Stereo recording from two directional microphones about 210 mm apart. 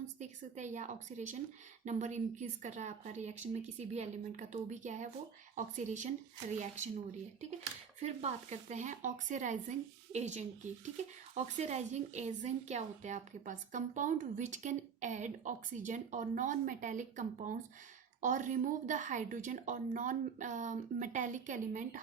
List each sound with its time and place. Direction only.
0.2 s speech: 35° right (ahead or behind)
8.0 s speech: 30° right (ahead or behind)